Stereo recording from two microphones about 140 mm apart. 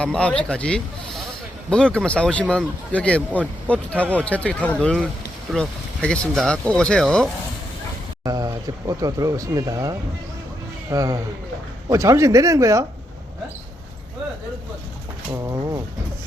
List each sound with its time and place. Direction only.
0.0 s speech: 5° left (ahead or behind)
8.2 s speech: 25° right (ahead or behind)
15.3 s speech: 25° right (ahead or behind)